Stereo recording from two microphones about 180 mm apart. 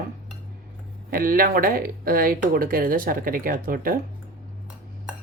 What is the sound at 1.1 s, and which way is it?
Speech, 50° right (ahead or behind).